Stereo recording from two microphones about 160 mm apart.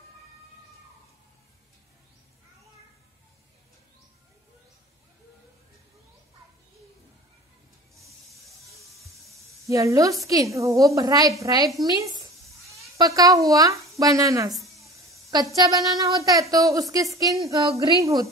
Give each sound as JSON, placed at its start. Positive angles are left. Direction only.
{"t": 9.7, "sound": "a woman's voice", "side_deg": -20}
{"t": 14.5, "sound": "a sound", "side_deg": 0}
{"t": 15.5, "sound": "a woman's voice", "side_deg": -25}